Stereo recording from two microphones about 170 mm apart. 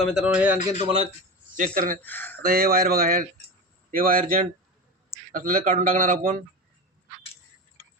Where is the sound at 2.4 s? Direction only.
60° right (ahead or behind).